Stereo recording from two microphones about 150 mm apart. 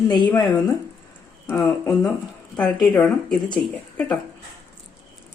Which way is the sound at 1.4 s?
20° left (ahead or behind).